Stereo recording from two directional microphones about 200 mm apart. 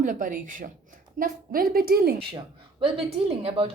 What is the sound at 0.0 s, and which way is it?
A woman's voice, 40° right (ahead or behind).